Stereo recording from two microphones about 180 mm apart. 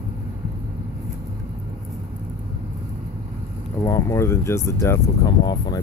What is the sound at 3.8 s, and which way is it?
Speech, 15° left (ahead or behind).